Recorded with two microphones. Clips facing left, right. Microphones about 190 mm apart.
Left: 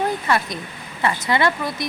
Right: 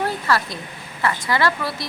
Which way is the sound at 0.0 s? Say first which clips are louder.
Left 1 dB; 20° left (ahead or behind).